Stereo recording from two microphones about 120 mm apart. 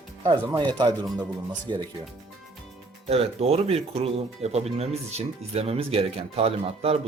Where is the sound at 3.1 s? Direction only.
60° right (ahead or behind).